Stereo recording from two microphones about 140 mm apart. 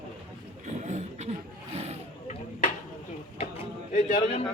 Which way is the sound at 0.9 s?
55° right (ahead or behind).